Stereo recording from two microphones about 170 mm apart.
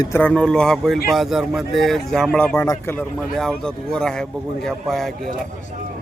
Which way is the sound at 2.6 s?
15° left (ahead or behind).